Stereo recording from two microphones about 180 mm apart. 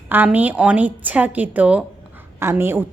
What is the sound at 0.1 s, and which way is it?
A woman's voice, 10° right (ahead or behind).